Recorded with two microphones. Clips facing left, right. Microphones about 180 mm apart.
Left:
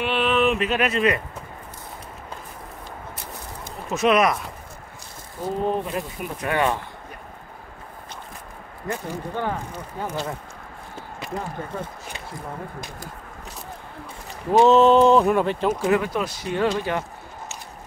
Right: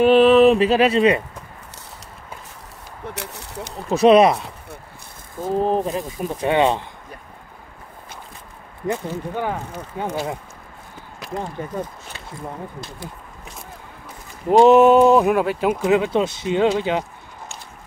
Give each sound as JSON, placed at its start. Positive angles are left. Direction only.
{"t": 0.0, "sound": "speech", "side_deg": -40}
{"t": 3.2, "sound": "a sound", "side_deg": -75}
{"t": 3.9, "sound": "speech", "side_deg": -30}
{"t": 5.4, "sound": "speech", "side_deg": -40}
{"t": 8.8, "sound": "speech", "side_deg": -20}
{"t": 14.6, "sound": "speech", "side_deg": -15}
{"t": 15.9, "sound": "speech", "side_deg": -25}